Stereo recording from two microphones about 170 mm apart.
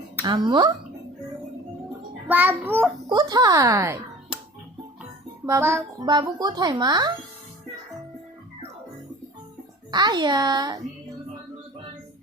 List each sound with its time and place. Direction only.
0.3 s speech: 25° right (ahead or behind)
2.2 s a child's voice: 10° right (ahead or behind)
3.1 s speech: 25° right (ahead or behind)
4.3 s music: 5° right (ahead or behind)
5.5 s a child's voice: 15° right (ahead or behind)
9.9 s speech: 25° right (ahead or behind)